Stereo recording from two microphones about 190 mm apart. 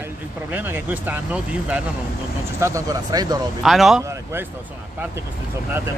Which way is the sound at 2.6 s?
15° right (ahead or behind).